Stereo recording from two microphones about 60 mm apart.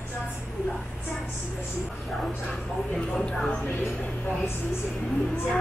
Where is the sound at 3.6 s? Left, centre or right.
Left.